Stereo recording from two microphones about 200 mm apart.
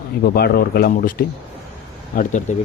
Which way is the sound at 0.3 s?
50° left (ahead or behind).